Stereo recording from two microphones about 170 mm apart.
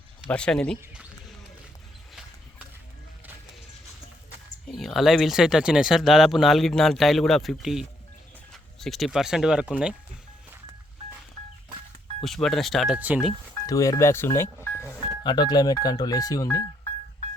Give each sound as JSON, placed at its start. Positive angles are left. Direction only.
{"t": 0.3, "sound": "speech", "side_deg": 5}
{"t": 4.7, "sound": "speech", "side_deg": 0}
{"t": 12.2, "sound": "speech", "side_deg": 0}
{"t": 13.7, "sound": "speech", "side_deg": 20}
{"t": 15.2, "sound": "speech", "side_deg": 25}